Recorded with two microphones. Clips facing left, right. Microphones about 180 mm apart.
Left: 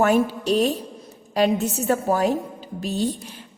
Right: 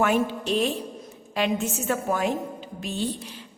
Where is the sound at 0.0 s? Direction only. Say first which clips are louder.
Left 4 dB; 40° left (ahead or behind).